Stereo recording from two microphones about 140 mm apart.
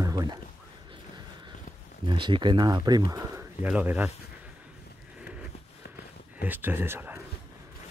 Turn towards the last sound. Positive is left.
turn(degrees=-15)  # may be behind; listen again after turning